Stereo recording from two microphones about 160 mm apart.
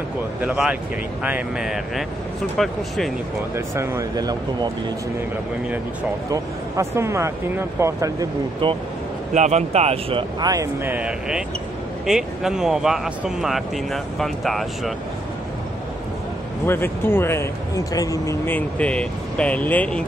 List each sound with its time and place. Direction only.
0.4 s speech: 5° right (ahead or behind)
3.5 s speech: 15° right (ahead or behind)
6.3 s speech: 20° right (ahead or behind)
8.6 s speech: 30° right (ahead or behind)
9.3 s speech: 45° right (ahead or behind)
10.4 s speech: 20° right (ahead or behind); by 14.7 s centre (ahead or behind)
16.6 s speech: 15° left (ahead or behind)